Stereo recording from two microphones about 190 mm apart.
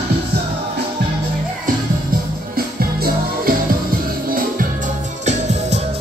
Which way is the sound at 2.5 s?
50° right (ahead or behind).